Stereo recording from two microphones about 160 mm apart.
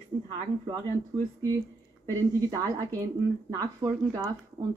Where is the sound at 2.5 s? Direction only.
25° right (ahead or behind).